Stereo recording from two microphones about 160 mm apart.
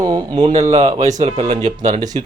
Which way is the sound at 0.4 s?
45° right (ahead or behind).